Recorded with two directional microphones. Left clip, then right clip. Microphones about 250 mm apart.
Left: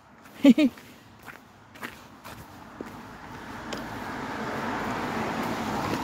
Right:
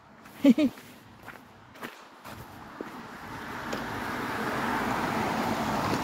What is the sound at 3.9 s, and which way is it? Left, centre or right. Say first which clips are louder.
Vehicle: right 2 dB; right.